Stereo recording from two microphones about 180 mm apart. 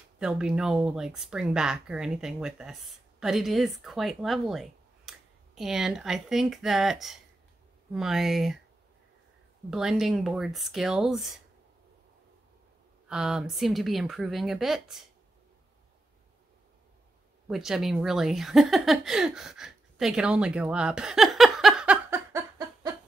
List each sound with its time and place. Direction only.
0.2 s speech: 5° right (ahead or behind)
9.7 s speech: 5° right (ahead or behind)
13.1 s speech: 5° right (ahead or behind)
17.5 s speech: centre (ahead or behind)
22.3 s a sound: 20° right (ahead or behind)